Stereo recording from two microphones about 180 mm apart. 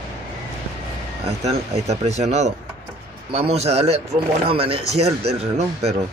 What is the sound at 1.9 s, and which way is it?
Speech, 40° right (ahead or behind).